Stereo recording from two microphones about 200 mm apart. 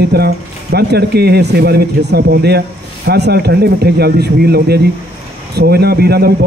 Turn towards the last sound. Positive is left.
turn(degrees=-50)  # may be behind; listen again after turning